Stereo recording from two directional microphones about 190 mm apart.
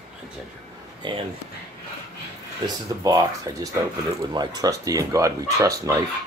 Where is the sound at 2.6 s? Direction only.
20° right (ahead or behind).